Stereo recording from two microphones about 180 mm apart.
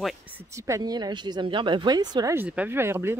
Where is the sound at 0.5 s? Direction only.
15° right (ahead or behind).